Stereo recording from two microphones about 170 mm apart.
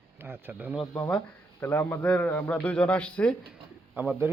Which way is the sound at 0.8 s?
25° left (ahead or behind).